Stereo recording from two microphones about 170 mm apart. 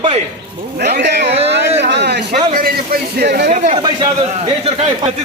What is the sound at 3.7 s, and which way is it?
A man's voice, 25° right (ahead or behind).